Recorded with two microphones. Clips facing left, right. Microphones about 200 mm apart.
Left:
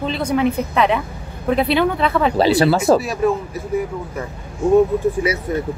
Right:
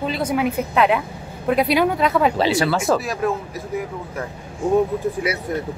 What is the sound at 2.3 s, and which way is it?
Speech, 35° left (ahead or behind).